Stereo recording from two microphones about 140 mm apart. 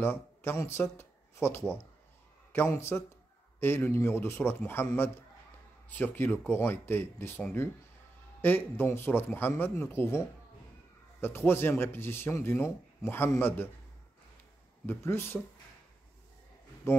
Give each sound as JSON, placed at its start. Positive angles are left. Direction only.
{"t": 0.0, "sound": "a man's voice", "side_deg": 15}
{"t": 14.9, "sound": "a man's voice", "side_deg": 15}
{"t": 16.9, "sound": "speech", "side_deg": 20}